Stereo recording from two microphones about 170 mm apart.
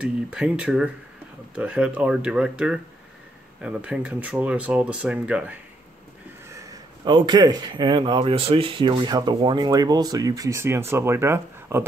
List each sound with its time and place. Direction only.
0.0 s speech: 5° right (ahead or behind)
6.6 s a man's voice: 25° right (ahead or behind)